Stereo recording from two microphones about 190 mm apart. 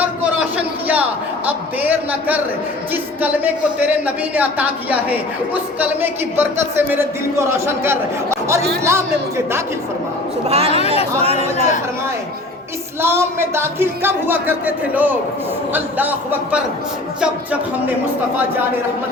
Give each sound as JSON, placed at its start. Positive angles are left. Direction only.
{"t": 0.5, "sound": "a sound", "side_deg": -10}
{"t": 1.5, "sound": "speech", "side_deg": -10}
{"t": 10.5, "sound": "speech", "side_deg": -30}
{"t": 10.8, "sound": "speech", "side_deg": 30}
{"t": 11.2, "sound": "speech", "side_deg": -35}
{"t": 13.0, "sound": "speech", "side_deg": -15}